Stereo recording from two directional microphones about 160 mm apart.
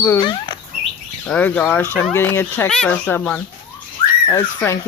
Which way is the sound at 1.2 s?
10° left (ahead or behind).